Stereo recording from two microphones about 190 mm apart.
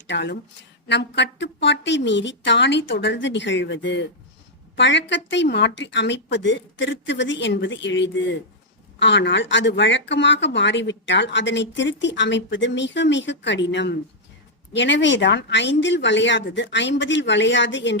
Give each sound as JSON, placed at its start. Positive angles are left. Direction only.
{"t": 0.1, "sound": "speech", "side_deg": 70}